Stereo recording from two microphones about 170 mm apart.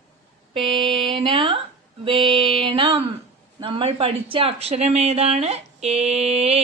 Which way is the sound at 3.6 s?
35° right (ahead or behind).